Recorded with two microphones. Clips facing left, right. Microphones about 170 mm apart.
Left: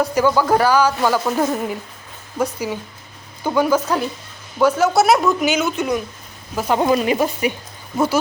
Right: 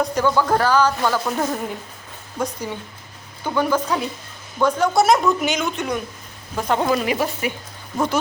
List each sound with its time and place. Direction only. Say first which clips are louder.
0.0 s speech: left 2 dB; 10° left (ahead or behind)
6.8 s speech: left 3 dB; 20° left (ahead or behind)
7.9 s speech: left 3 dB; 5° left (ahead or behind)